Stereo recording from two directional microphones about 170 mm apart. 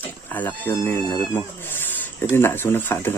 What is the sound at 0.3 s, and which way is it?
Speech, 10° left (ahead or behind).